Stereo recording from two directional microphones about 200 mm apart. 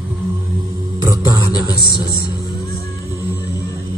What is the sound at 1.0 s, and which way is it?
Beatboxing, 15° right (ahead or behind).